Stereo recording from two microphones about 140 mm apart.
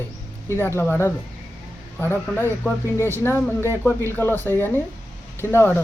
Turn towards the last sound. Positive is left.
turn(degrees=15)  # may be behind; listen again after turning